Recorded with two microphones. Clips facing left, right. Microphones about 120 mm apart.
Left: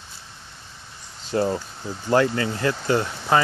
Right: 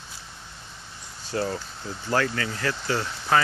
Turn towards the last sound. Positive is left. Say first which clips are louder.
# left 3 dB
turn(degrees=20)  # may be behind; listen again after turning